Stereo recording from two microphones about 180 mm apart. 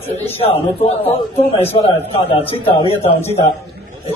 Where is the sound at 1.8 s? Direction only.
30° left (ahead or behind).